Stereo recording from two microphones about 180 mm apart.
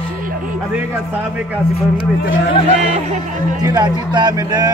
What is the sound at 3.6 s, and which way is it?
Speech, 25° right (ahead or behind).